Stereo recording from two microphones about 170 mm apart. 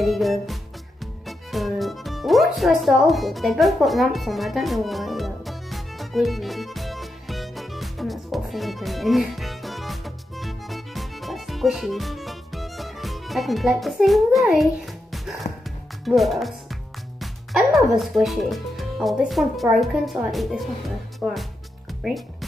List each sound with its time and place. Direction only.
0.0 s music: centre (ahead or behind)
16.1 s speech: centre (ahead or behind)